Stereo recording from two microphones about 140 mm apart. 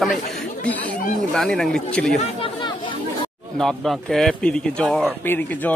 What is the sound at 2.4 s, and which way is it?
Chatter, 35° left (ahead or behind).